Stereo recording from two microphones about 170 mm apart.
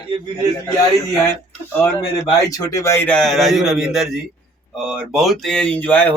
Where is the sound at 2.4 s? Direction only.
20° left (ahead or behind).